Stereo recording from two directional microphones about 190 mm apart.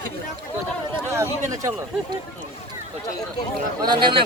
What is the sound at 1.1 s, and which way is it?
Speech, 15° right (ahead or behind).